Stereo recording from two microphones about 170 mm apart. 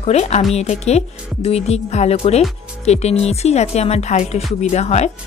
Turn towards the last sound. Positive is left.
turn(degrees=40)  # may be behind; listen again after turning